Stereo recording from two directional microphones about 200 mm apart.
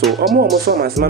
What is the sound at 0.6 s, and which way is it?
Speech, 50° right (ahead or behind).